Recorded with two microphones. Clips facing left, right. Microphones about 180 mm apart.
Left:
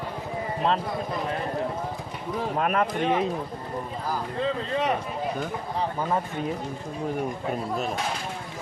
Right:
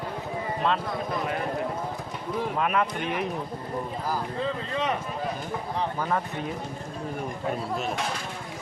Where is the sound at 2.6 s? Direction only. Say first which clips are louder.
Left 3 dB; 40° left (ahead or behind).